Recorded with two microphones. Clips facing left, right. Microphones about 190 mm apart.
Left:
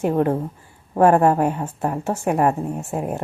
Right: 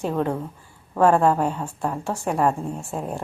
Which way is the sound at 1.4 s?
20° left (ahead or behind).